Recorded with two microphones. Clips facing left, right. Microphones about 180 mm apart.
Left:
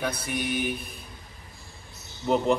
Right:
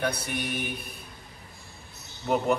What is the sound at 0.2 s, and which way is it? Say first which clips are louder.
Speech: left 3 dB; centre (ahead or behind).